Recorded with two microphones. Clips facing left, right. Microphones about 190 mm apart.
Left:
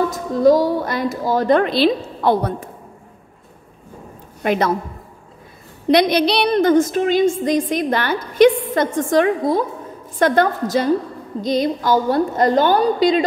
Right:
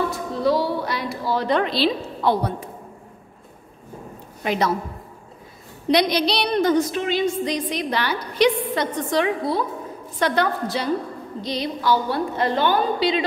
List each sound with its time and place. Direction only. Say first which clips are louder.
0.1 s a woman's voice: left 7 dB; 45° left (ahead or behind)
4.4 s a woman's voice: left 4 dB; 55° left (ahead or behind)
5.9 s a woman's voice: left 5 dB; 55° left (ahead or behind)